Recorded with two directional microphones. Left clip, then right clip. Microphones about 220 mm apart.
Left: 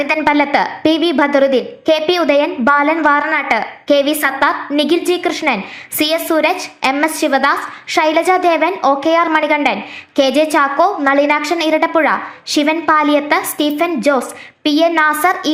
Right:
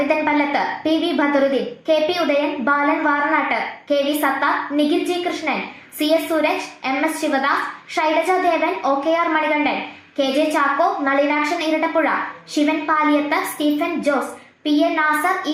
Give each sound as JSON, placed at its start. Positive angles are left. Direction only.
{"t": 0.1, "sound": "a woman's voice", "side_deg": 50}